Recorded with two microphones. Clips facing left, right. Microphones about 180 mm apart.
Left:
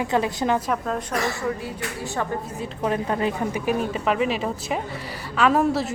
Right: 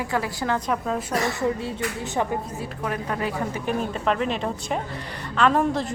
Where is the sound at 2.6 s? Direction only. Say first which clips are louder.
Left 4 dB; 25° left (ahead or behind).